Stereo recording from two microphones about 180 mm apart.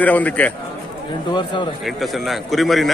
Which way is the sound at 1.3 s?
25° left (ahead or behind).